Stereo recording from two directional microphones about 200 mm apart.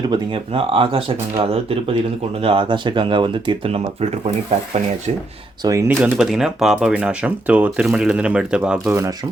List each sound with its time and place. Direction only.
0.1 s speech: 25° right (ahead or behind)
5.6 s speech: 10° right (ahead or behind)